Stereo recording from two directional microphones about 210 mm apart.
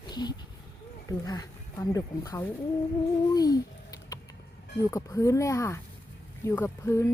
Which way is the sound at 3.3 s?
15° left (ahead or behind).